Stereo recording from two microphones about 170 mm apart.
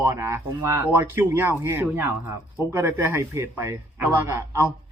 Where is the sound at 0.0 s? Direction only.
15° right (ahead or behind).